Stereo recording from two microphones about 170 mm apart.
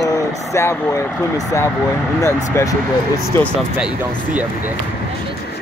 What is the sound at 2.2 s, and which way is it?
Speech, 20° left (ahead or behind).